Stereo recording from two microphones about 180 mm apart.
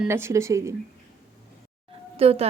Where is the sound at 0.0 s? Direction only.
15° right (ahead or behind).